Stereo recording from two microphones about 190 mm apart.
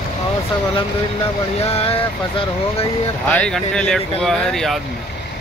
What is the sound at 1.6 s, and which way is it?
Speech, 30° left (ahead or behind).